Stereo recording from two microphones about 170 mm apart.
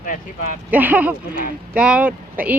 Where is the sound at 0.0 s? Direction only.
50° left (ahead or behind).